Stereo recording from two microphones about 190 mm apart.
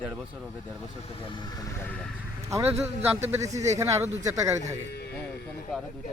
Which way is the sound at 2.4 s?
15° right (ahead or behind).